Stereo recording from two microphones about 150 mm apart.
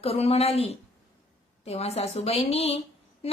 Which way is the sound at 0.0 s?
40° left (ahead or behind).